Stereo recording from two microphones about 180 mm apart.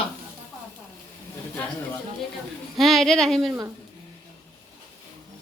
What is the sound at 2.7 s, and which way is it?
Speech, centre (ahead or behind).